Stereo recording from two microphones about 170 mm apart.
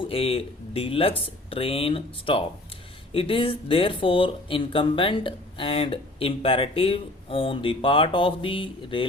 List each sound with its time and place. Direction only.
0.0 s speech: 35° left (ahead or behind)